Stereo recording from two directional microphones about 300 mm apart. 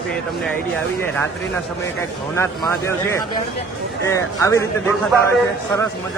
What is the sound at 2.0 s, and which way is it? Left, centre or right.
Speech, centre.